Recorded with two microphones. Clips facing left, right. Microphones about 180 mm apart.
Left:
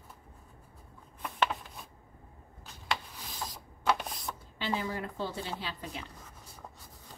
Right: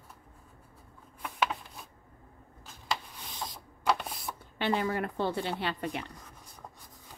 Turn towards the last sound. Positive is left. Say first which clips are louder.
# right 7 dB
turn(degrees=-65)  # may be behind; listen again after turning